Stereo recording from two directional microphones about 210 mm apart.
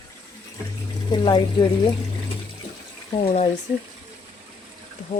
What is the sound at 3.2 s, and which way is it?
Speech, 30° left (ahead or behind).